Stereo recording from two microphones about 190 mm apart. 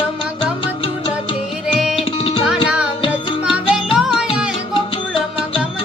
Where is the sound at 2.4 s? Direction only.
5° right (ahead or behind).